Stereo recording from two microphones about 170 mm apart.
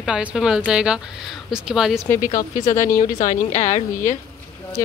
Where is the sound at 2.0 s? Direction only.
15° left (ahead or behind).